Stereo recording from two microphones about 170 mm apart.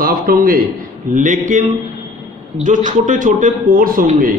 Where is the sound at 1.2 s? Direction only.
45° right (ahead or behind).